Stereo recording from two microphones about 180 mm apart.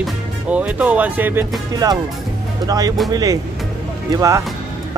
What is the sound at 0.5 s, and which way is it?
Speech, 5° right (ahead or behind).